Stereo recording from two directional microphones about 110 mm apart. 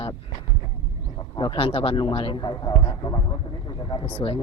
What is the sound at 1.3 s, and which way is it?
A man's voice, 50° left (ahead or behind).